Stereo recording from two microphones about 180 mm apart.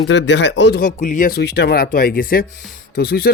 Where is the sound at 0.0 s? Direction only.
80° left.